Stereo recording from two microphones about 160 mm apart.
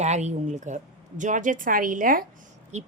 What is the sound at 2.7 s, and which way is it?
Speech, 45° right (ahead or behind).